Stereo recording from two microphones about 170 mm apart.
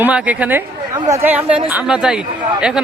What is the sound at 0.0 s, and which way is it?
A man's voice, 10° right (ahead or behind).